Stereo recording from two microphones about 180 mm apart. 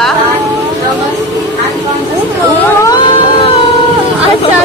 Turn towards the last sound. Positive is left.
turn(degrees=25)  # may be behind; listen again after turning